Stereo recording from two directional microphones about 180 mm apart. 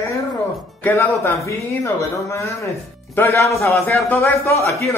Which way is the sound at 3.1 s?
15° left (ahead or behind).